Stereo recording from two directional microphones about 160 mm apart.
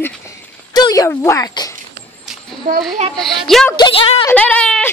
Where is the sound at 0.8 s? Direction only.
20° left (ahead or behind).